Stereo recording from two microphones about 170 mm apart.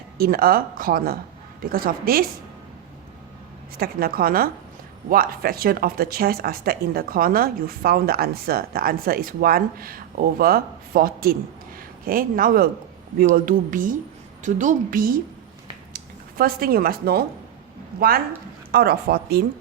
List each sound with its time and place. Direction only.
0.2 s speech: 60° right (ahead or behind)
3.8 s a woman's voice: 60° right (ahead or behind)
16.4 s speech: 60° right (ahead or behind)
18.7 s speech: 70° right (ahead or behind)